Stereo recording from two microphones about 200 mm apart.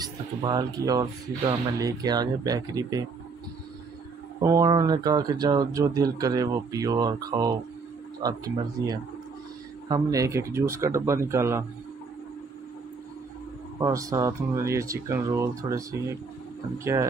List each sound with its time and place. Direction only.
0.0 s speech: 20° right (ahead or behind)
4.4 s speech: 15° right (ahead or behind)
13.7 s speech: 15° right (ahead or behind)